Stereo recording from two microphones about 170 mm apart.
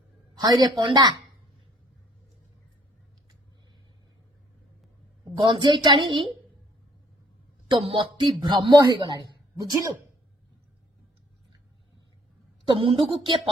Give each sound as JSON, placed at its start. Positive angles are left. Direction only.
{"t": 0.3, "sound": "a man's voice", "side_deg": -25}
{"t": 5.3, "sound": "a man's voice", "side_deg": -30}
{"t": 7.7, "sound": "a man's voice", "side_deg": -30}
{"t": 12.6, "sound": "a woman's voice", "side_deg": -30}